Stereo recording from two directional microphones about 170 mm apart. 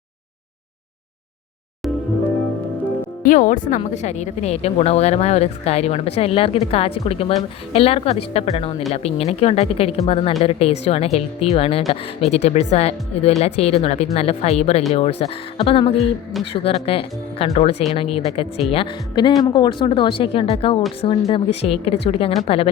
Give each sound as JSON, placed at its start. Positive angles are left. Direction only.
{"t": 3.2, "sound": "a woman's voice", "side_deg": 50}